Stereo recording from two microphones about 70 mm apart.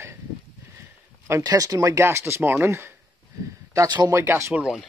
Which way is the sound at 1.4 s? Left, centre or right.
Right.